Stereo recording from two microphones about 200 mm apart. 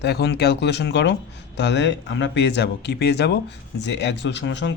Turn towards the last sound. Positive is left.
turn(degrees=65)  # may be behind; listen again after turning